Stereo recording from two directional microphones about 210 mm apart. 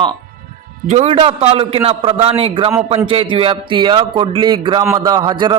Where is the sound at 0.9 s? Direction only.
30° right (ahead or behind).